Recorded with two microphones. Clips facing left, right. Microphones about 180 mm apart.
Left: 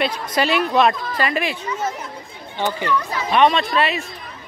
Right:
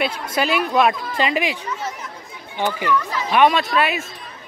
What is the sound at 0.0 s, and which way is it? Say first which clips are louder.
Speech: left 1 dB; 5° right (ahead or behind).